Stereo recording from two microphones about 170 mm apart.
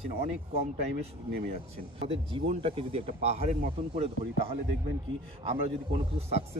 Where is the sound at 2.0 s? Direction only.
35° right (ahead or behind).